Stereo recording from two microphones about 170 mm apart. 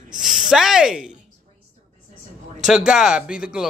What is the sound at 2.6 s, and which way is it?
Speech, 5° right (ahead or behind).